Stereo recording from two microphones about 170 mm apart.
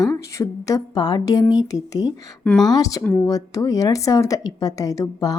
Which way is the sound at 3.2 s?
20° left (ahead or behind).